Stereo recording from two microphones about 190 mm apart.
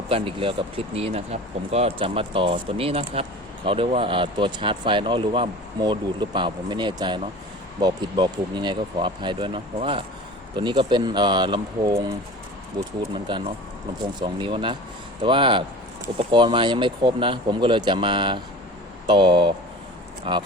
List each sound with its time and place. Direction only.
0.1 s speech: 30° right (ahead or behind)